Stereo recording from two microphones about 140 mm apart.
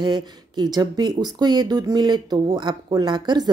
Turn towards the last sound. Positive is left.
turn(degrees=-30)  # may be behind; listen again after turning